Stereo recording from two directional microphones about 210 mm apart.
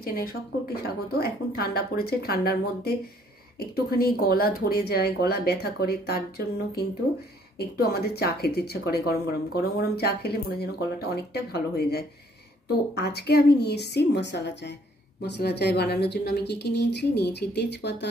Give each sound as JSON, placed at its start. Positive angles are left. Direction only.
{"t": 0.0, "sound": "speech", "side_deg": 45}